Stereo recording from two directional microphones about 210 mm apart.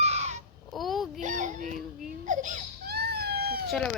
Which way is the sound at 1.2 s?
35° right (ahead or behind).